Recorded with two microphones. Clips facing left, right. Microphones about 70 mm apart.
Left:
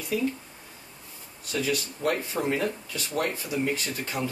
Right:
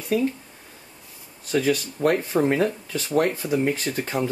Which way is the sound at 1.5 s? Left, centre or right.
Right.